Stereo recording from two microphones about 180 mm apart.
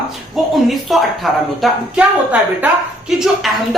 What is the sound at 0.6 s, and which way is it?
A man's voice, centre (ahead or behind).